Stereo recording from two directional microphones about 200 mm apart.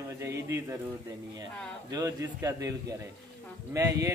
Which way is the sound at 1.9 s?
15° right (ahead or behind).